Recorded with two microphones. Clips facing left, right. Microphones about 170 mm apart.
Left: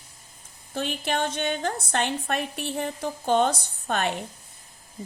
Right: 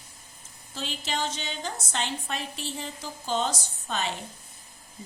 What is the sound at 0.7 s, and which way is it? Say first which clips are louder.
A woman's voice: left 6 dB; 55° left (ahead or behind).